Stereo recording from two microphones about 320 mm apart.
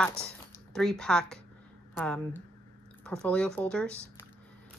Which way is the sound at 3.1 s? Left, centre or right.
Centre.